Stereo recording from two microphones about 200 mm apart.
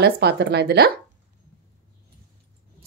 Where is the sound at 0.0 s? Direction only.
55° right (ahead or behind).